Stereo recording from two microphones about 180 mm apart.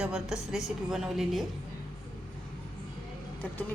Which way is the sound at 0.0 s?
5° right (ahead or behind).